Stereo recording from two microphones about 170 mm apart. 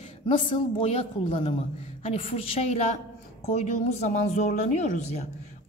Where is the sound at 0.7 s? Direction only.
40° left (ahead or behind).